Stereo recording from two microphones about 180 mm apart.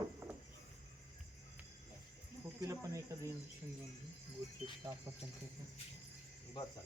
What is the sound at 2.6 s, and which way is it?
Speech, 15° right (ahead or behind).